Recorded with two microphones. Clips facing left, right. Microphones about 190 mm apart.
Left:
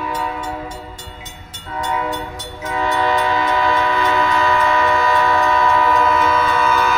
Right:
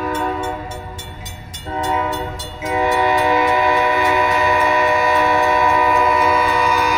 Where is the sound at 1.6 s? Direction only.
25° right (ahead or behind).